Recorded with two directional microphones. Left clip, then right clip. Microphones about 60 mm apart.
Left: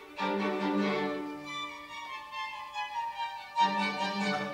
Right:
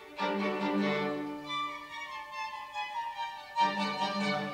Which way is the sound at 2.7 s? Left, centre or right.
Centre.